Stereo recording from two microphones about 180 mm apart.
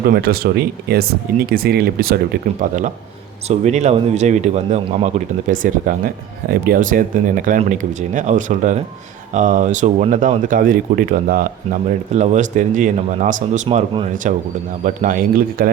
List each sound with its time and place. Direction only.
0.0 s speech: 60° right (ahead or behind)
2.6 s speech: 45° right (ahead or behind)
5.5 s speech: 45° right (ahead or behind)